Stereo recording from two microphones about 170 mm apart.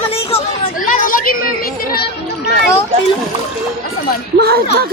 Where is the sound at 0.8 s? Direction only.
50° left (ahead or behind).